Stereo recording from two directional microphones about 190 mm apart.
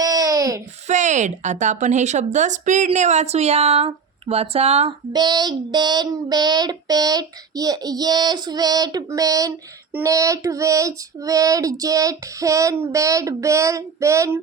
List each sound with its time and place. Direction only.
0.0 s a sound: 20° right (ahead or behind)
0.9 s a woman's voice: 40° right (ahead or behind)
5.1 s child singing: 20° right (ahead or behind)